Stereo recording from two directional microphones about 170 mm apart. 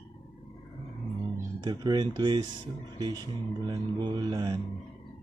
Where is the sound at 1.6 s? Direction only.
25° right (ahead or behind).